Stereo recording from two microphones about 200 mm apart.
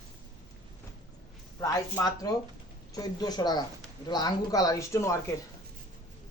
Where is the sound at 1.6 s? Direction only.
15° left (ahead or behind).